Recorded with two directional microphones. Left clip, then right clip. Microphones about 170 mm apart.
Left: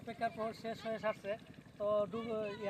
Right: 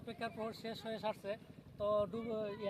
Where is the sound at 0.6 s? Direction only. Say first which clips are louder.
Left 2 dB; 40° right (ahead or behind).